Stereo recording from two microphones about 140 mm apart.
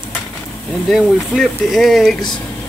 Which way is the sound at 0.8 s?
5° right (ahead or behind).